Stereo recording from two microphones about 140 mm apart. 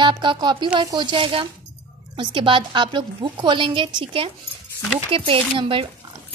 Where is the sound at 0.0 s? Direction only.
35° right (ahead or behind).